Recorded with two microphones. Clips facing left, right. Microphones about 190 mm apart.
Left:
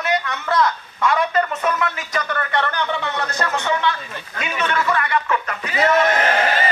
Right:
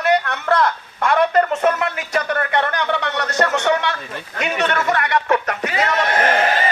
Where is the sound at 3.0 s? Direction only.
75° right (ahead or behind).